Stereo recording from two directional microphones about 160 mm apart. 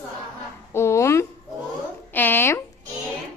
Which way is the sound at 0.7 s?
15° left (ahead or behind).